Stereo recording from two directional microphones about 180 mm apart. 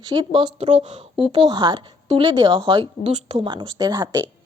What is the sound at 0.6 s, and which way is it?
Speech, 40° right (ahead or behind).